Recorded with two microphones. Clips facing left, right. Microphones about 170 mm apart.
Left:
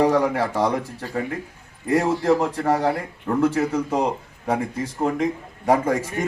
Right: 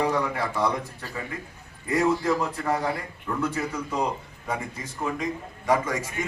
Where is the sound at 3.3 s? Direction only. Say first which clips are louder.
Left 8 dB; 55° left (ahead or behind).